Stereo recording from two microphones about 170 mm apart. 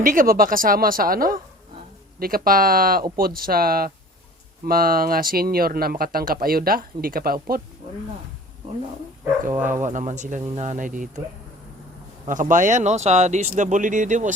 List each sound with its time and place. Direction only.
0.0 s speech: 55° right (ahead or behind)
9.8 s speech: 45° right (ahead or behind)
12.3 s speech: 50° right (ahead or behind)